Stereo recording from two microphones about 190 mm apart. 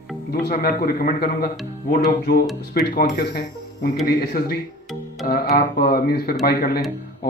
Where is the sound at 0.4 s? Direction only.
55° left (ahead or behind).